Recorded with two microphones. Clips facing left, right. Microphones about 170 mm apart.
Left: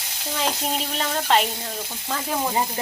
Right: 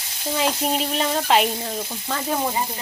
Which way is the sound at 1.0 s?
5° right (ahead or behind).